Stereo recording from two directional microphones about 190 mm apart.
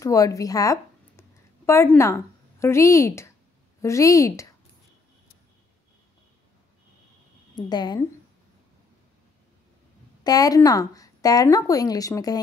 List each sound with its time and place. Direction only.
0.0 s a woman's voice: 15° left (ahead or behind)
7.5 s speech: 20° left (ahead or behind)
10.2 s speech: 20° left (ahead or behind)